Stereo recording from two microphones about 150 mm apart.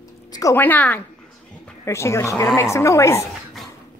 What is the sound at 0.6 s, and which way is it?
A woman's voice, 10° left (ahead or behind).